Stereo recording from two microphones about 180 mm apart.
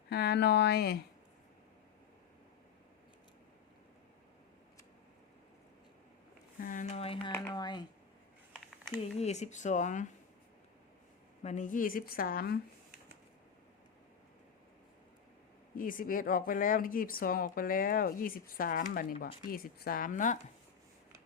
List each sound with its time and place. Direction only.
0.1 s speech: 65° left (ahead or behind)
6.6 s speech: 45° left (ahead or behind); by 7.9 s 25° left (ahead or behind)
9.1 s speech: 40° left (ahead or behind)
11.4 s speech: 45° left (ahead or behind)
15.8 s speech: 50° left (ahead or behind)